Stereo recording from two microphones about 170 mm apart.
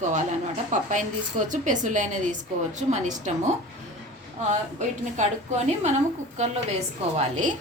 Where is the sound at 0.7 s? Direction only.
45° right (ahead or behind).